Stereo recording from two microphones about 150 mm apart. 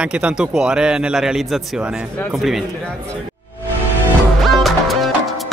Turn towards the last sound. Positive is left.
turn(degrees=0)  # may be behind; listen again after turning